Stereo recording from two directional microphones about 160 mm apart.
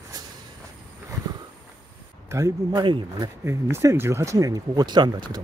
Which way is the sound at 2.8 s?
30° right (ahead or behind).